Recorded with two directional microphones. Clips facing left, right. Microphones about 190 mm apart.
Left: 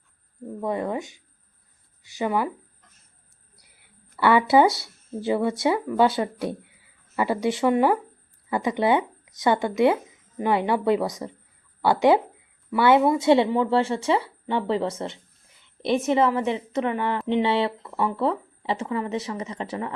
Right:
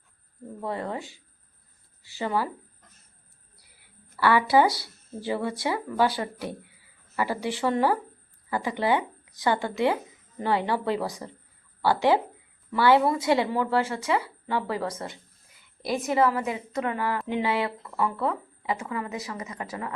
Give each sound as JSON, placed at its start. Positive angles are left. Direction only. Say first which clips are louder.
{"t": 0.6, "sound": "speech", "louder": "left 5 dB", "side_deg": 15}
{"t": 4.2, "sound": "speech", "louder": "left 3 dB", "side_deg": 20}